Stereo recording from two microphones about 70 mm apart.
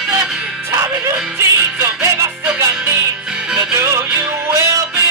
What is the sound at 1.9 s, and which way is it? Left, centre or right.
Music, right.